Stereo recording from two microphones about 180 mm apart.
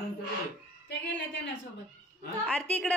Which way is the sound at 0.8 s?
85° left.